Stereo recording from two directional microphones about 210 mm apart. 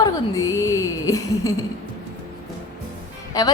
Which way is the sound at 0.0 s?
15° left (ahead or behind).